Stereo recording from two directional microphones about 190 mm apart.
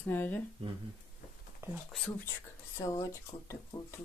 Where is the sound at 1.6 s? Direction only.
10° right (ahead or behind).